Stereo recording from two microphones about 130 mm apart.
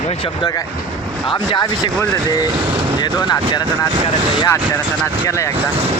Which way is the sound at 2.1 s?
30° left (ahead or behind).